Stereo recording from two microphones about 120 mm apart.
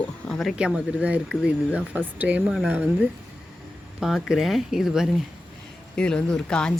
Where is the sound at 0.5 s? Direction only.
10° right (ahead or behind).